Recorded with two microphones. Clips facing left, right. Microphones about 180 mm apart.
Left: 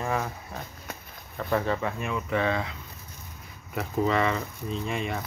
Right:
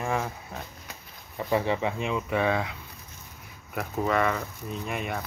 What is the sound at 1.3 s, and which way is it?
Speech, 15° right (ahead or behind).